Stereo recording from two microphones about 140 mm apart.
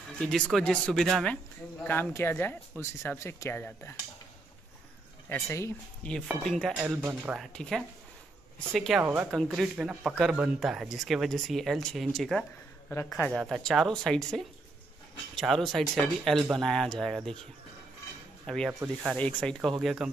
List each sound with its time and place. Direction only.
0.2 s speech: 5° left (ahead or behind)
5.3 s speech: 20° left (ahead or behind)
6.7 s speech: 15° right (ahead or behind)
7.3 s speech: 5° left (ahead or behind)
9.0 s speech: 10° right (ahead or behind)
9.3 s speech: centre (ahead or behind)
18.7 s speech: 10° right (ahead or behind)
19.1 s speech: 10° left (ahead or behind)